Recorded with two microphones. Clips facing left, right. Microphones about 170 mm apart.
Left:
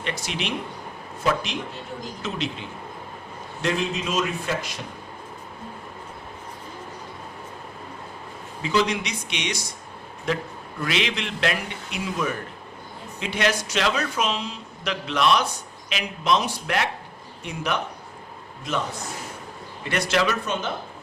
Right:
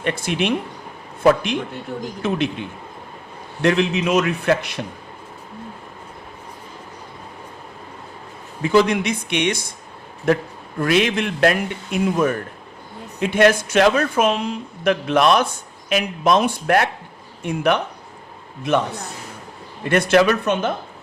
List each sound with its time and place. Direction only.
0.0 s a man's voice: 55° right (ahead or behind)
8.6 s a man's voice: 55° right (ahead or behind)
10.8 s a man's voice: 50° right (ahead or behind)
19.8 s speech: 55° right (ahead or behind)